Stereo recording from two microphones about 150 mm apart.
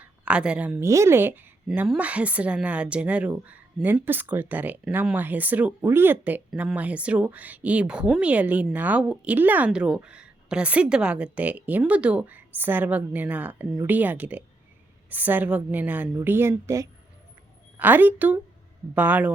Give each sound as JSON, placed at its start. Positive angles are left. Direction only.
{"t": 0.0, "sound": "a woman's voice", "side_deg": -5}